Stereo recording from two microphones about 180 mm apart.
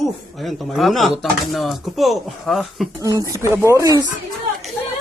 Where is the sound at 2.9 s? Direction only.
20° right (ahead or behind).